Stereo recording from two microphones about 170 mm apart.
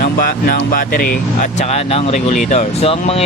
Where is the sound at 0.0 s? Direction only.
55° left (ahead or behind).